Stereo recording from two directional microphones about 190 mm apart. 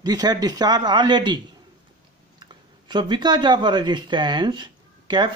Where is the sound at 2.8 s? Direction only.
25° right (ahead or behind).